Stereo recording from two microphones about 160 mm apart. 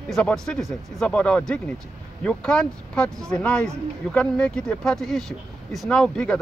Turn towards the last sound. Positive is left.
turn(degrees=5)  # may be behind; listen again after turning